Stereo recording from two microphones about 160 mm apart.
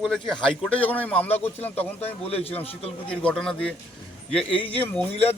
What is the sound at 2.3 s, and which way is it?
Speech, 40° left (ahead or behind).